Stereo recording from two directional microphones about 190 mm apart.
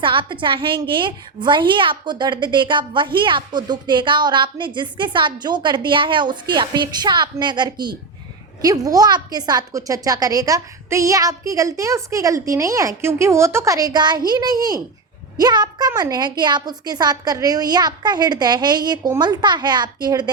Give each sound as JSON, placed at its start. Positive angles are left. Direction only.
{"t": 0.0, "sound": "a woman's voice", "side_deg": -25}